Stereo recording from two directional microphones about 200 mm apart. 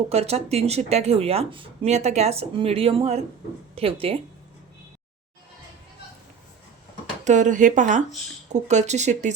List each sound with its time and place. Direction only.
0.1 s a woman's voice: 30° right (ahead or behind)
7.3 s speech: 35° right (ahead or behind)